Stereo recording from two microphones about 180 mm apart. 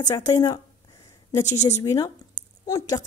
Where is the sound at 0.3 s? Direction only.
20° left (ahead or behind).